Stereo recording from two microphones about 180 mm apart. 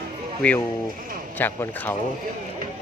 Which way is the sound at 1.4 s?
10° left (ahead or behind).